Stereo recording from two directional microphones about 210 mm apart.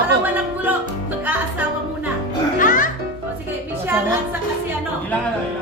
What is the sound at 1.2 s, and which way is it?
Music, 5° right (ahead or behind).